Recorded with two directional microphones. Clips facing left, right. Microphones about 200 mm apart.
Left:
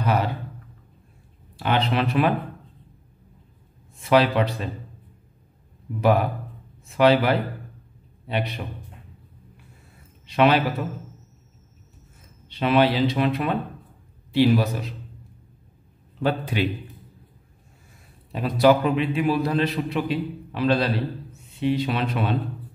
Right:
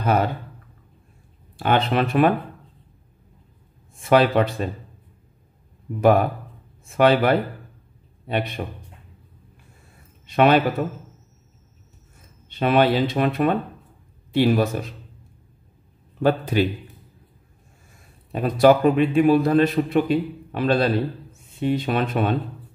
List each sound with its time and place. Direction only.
1.6 s a man's voice: 45° right (ahead or behind)
4.0 s a man's voice: 50° right (ahead or behind)
6.8 s a man's voice: 50° right (ahead or behind)
10.2 s a man's voice: 50° right (ahead or behind)
12.4 s a man's voice: 50° right (ahead or behind)
16.2 s a man's voice: 45° right (ahead or behind)
18.3 s a man's voice: 50° right (ahead or behind)